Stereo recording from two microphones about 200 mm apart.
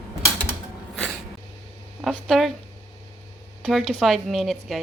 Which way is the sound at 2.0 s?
Centre (ahead or behind).